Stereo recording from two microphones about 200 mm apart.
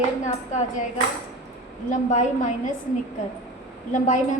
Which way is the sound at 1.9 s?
40° left (ahead or behind).